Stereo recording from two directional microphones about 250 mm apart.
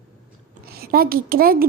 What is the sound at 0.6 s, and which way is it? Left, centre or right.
A woman's voice, right.